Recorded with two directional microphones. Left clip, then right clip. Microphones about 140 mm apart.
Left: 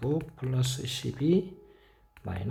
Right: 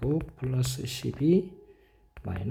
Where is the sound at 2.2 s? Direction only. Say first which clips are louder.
Even; 30° right (ahead or behind).